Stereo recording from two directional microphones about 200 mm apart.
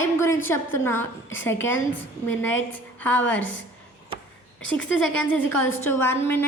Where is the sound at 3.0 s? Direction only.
10° left (ahead or behind).